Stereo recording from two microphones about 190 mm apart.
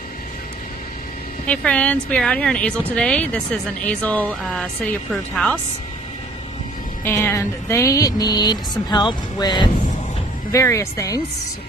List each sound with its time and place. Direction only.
1.5 s speech: 5° left (ahead or behind)
7.1 s speech: 15° left (ahead or behind)